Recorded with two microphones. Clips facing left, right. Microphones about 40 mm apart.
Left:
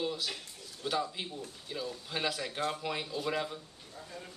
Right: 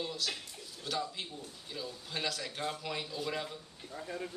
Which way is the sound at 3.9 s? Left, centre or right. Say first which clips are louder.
Right 5 dB; right.